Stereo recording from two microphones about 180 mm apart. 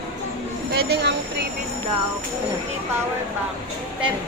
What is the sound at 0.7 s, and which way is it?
Train, 60° right (ahead or behind).